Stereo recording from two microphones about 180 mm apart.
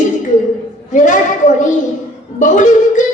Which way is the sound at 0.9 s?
45° left (ahead or behind).